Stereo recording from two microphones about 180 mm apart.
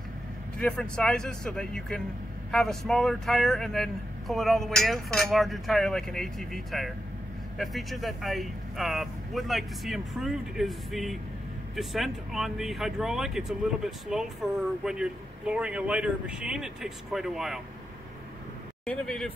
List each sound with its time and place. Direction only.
0.6 s speech: 5° left (ahead or behind)
18.9 s speech: 5° left (ahead or behind)